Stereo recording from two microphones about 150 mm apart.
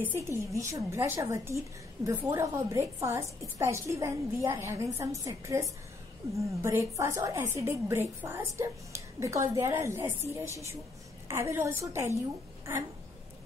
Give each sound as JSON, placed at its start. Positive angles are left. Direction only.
{"t": 0.0, "sound": "a woman's voice", "side_deg": -15}
{"t": 11.2, "sound": "a woman's voice", "side_deg": -20}